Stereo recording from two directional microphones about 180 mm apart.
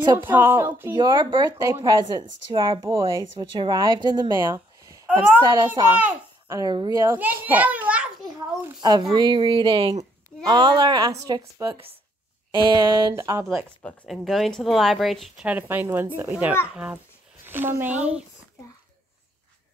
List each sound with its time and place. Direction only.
0.0 s a woman's voice: 25° right (ahead or behind)
0.3 s a child's voice: 15° right (ahead or behind)
0.9 s speech: 25° right (ahead or behind)
4.5 s a sound: 10° right (ahead or behind)
5.4 s speech: 25° right (ahead or behind)
5.9 s speech: 10° right (ahead or behind)
6.6 s a child's voice: 25° right (ahead or behind); by 8.1 s 10° right (ahead or behind)
9.1 s speech: 25° right (ahead or behind)
10.4 s speech: 20° right (ahead or behind)
13.8 s a child's voice: centre (ahead or behind)